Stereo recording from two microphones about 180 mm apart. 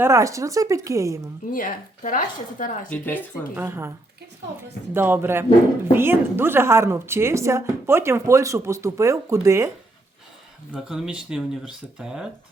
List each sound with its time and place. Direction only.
0.0 s speech: 15° right (ahead or behind)
1.5 s speech: 45° left (ahead or behind)
2.9 s speech: 10° left (ahead or behind)
3.5 s speech: 15° right (ahead or behind)
4.9 s speech: 10° right (ahead or behind)
10.7 s speech: 5° right (ahead or behind)